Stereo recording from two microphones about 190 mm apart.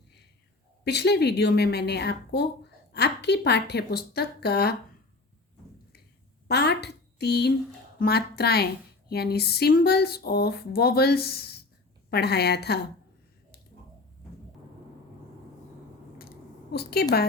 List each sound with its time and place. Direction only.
0.9 s speech: 60° left (ahead or behind)
6.5 s speech: 60° left (ahead or behind)
16.7 s speech: 60° left (ahead or behind)